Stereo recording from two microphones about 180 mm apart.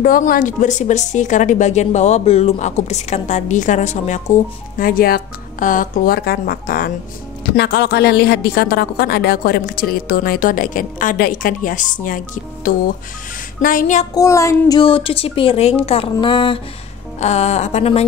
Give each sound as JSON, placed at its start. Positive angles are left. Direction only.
{"t": 0.0, "sound": "speech", "side_deg": 50}
{"t": 4.7, "sound": "speech", "side_deg": 50}
{"t": 7.5, "sound": "speech", "side_deg": 70}
{"t": 13.6, "sound": "speech", "side_deg": 50}
{"t": 14.1, "sound": "a sound", "side_deg": 15}
{"t": 14.8, "sound": "speech", "side_deg": 30}
{"t": 17.2, "sound": "speech", "side_deg": 40}